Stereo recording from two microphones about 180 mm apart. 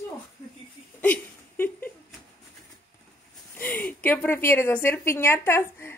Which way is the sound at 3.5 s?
10° left (ahead or behind).